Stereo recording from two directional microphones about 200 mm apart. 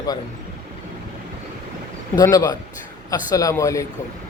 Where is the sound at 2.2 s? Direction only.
15° left (ahead or behind).